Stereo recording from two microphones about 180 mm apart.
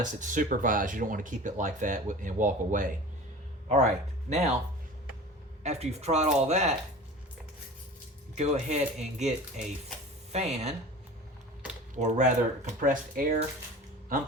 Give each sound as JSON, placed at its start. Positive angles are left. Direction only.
{"t": 0.0, "sound": "speech", "side_deg": -45}
{"t": 4.3, "sound": "speech", "side_deg": -40}
{"t": 5.6, "sound": "speech", "side_deg": -40}
{"t": 8.4, "sound": "speech", "side_deg": -40}
{"t": 10.3, "sound": "speech", "side_deg": -40}
{"t": 11.9, "sound": "speech", "side_deg": -40}